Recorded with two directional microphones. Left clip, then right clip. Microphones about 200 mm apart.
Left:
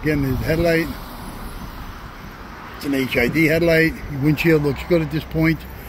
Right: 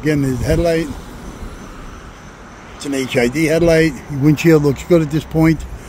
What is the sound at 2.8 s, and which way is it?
Speech, 30° right (ahead or behind).